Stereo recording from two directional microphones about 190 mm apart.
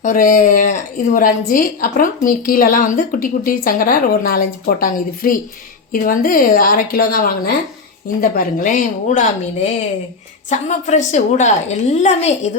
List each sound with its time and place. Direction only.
0.0 s a woman's voice: 45° left (ahead or behind)
10.5 s a woman's voice: 40° left (ahead or behind)